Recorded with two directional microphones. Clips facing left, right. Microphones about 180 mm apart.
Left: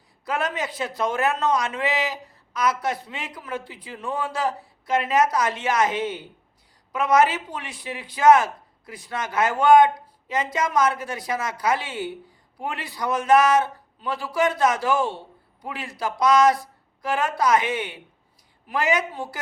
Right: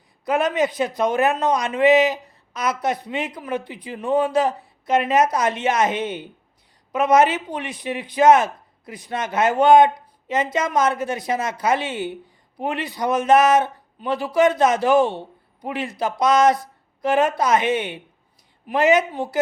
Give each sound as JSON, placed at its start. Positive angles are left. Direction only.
{"t": 0.3, "sound": "speech", "side_deg": -20}